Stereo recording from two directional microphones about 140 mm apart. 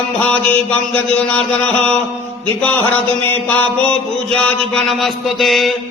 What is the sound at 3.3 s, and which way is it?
Mantra, 15° left (ahead or behind).